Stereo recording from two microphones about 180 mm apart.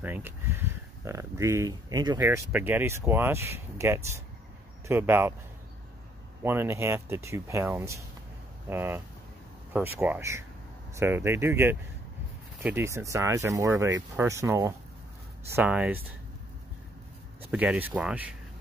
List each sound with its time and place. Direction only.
0.0 s speech: 10° right (ahead or behind)
6.4 s speech: 10° right (ahead or behind)
17.4 s speech: 10° right (ahead or behind)